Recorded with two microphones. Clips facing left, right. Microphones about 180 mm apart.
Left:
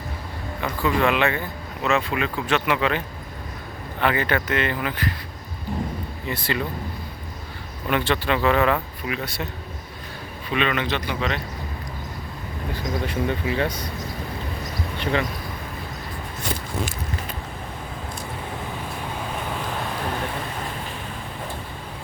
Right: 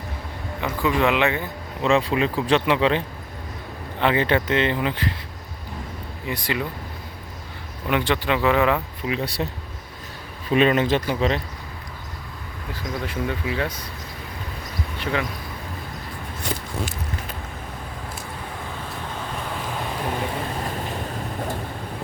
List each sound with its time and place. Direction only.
0.6 s speech: 15° right (ahead or behind)
1.8 s speech: 30° right (ahead or behind)
4.0 s speech: 25° right (ahead or behind)
6.2 s speech: 15° right (ahead or behind)
7.9 s speech: 15° right (ahead or behind)
9.1 s speech: 35° right (ahead or behind)
10.5 s speech: 40° right (ahead or behind)
12.7 s speech: centre (ahead or behind)